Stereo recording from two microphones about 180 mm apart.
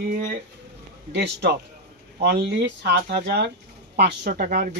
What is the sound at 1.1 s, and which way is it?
Speech, 65° right (ahead or behind).